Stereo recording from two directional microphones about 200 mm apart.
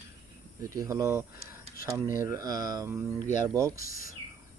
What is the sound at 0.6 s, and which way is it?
Speech, 15° right (ahead or behind).